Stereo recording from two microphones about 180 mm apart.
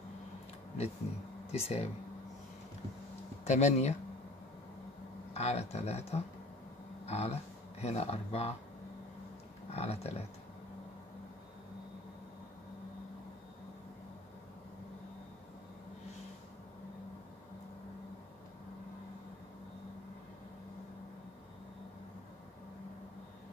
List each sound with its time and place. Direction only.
1.5 s speech: 35° left (ahead or behind)
3.4 s speech: 40° left (ahead or behind)
5.3 s speech: 35° left (ahead or behind)
9.7 s speech: 35° left (ahead or behind)